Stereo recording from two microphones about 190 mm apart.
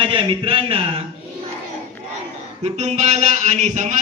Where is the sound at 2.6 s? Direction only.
35° right (ahead or behind).